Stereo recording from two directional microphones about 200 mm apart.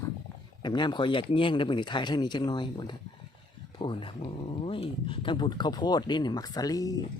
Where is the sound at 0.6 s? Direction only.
20° left (ahead or behind).